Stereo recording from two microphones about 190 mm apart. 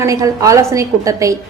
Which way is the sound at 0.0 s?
15° right (ahead or behind).